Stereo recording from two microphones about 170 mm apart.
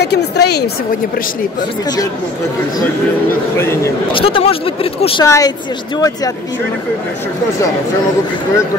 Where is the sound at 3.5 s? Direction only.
15° left (ahead or behind).